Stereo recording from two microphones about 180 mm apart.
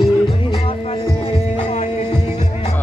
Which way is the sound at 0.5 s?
30° left (ahead or behind).